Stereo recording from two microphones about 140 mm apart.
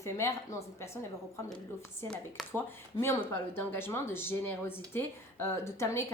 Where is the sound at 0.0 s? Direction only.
20° left (ahead or behind).